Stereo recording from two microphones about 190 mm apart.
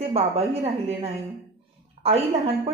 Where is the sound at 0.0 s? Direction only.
30° right (ahead or behind).